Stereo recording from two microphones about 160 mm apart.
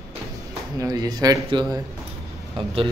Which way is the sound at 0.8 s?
20° right (ahead or behind).